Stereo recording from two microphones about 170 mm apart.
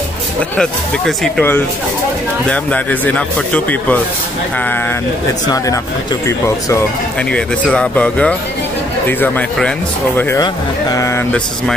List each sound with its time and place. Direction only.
0.4 s speech: 5° left (ahead or behind)
6.2 s speech: 15° left (ahead or behind)
7.2 s speech: 5° left (ahead or behind)